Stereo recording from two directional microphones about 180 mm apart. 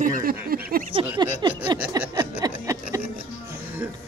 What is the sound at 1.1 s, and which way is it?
Speech, 25° right (ahead or behind).